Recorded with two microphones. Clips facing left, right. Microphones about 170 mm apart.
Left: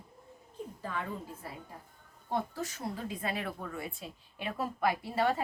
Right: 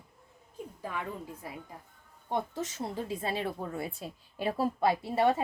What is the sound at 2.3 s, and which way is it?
Speech, 20° right (ahead or behind).